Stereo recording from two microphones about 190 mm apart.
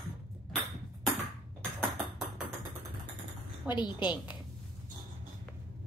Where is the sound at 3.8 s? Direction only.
25° left (ahead or behind).